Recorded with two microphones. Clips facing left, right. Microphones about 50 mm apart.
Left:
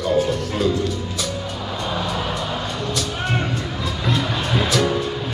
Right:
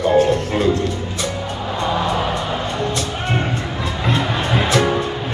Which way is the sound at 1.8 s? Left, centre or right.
Right.